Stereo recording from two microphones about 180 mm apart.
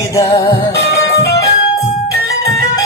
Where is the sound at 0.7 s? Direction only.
70° left (ahead or behind).